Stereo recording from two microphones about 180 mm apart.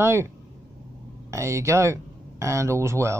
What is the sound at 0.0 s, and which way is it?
Speech, 15° right (ahead or behind).